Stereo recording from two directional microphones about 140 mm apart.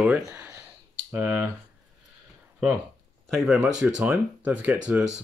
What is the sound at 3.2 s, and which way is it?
Speech, centre (ahead or behind).